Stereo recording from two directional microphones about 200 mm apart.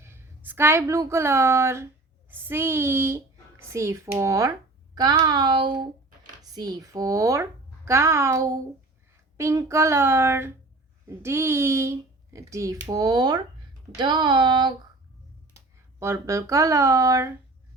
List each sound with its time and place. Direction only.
0.0 s speech: 10° right (ahead or behind)